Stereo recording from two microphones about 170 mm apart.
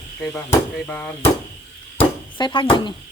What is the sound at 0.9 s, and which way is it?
Speech, 10° left (ahead or behind).